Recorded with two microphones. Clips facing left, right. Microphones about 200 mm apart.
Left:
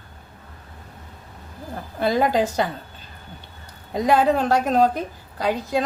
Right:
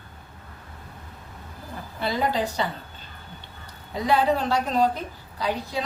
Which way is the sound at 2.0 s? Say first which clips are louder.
Left 6 dB; 50° left (ahead or behind).